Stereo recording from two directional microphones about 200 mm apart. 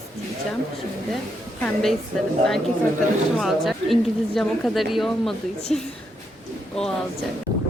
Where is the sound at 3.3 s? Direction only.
Centre (ahead or behind).